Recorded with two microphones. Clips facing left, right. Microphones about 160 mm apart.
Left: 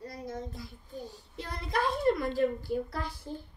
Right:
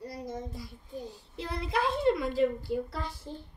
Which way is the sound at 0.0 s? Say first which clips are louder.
Right 1 dB; 15° right (ahead or behind).